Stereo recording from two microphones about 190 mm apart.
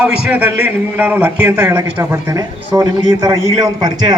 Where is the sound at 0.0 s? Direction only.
5° right (ahead or behind).